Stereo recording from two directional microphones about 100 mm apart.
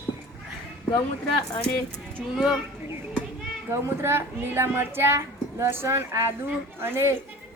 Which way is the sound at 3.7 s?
25° right (ahead or behind).